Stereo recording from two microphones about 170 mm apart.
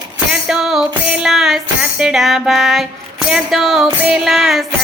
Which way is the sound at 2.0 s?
Centre (ahead or behind).